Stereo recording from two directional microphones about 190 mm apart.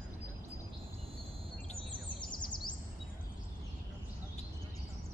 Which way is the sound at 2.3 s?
25° left (ahead or behind).